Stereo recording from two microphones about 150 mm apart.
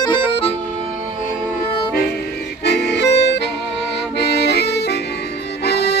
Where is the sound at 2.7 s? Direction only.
90° left.